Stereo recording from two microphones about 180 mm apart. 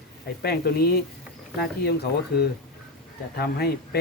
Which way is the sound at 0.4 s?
65° left (ahead or behind).